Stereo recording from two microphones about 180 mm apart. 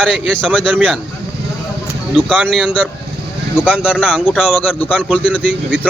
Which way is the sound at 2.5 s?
5° left (ahead or behind).